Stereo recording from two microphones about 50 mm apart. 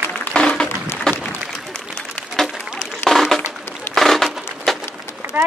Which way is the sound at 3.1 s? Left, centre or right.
Centre.